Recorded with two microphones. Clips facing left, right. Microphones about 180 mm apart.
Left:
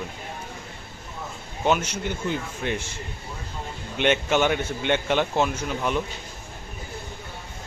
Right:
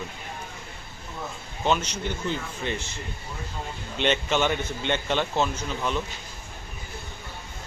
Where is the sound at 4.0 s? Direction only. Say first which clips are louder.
Left 3 dB; 10° left (ahead or behind).